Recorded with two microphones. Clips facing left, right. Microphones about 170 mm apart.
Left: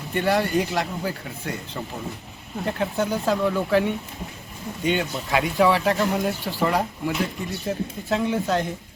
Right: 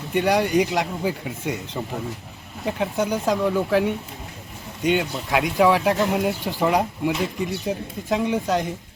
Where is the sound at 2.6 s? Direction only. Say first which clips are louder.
Right 1 dB; 5° right (ahead or behind).